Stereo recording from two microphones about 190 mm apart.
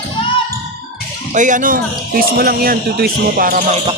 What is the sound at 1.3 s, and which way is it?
Speech, 40° right (ahead or behind).